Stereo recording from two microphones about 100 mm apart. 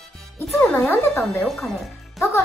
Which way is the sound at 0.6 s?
5° left (ahead or behind).